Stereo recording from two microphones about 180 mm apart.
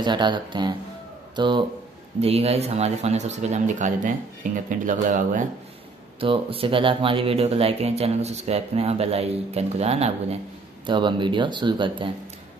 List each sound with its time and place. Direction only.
0.0 s speech: 25° right (ahead or behind); by 5.4 s 45° right (ahead or behind)
6.1 s speech: 30° right (ahead or behind)